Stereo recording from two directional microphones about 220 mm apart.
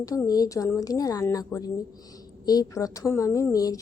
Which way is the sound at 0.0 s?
15° left (ahead or behind).